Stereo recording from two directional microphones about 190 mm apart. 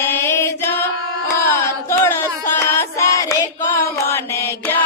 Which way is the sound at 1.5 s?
10° left (ahead or behind).